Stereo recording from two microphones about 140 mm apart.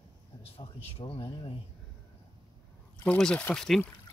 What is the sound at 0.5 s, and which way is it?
Speech, 40° left (ahead or behind).